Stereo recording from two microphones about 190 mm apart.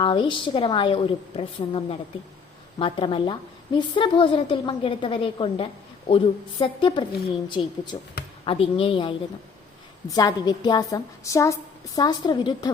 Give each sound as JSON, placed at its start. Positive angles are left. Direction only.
{"t": 0.0, "sound": "a woman's voice", "side_deg": 25}